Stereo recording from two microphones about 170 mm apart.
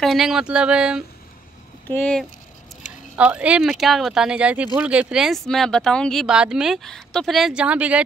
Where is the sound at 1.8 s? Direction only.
10° left (ahead or behind).